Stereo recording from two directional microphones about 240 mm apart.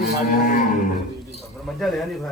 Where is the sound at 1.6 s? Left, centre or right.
Centre.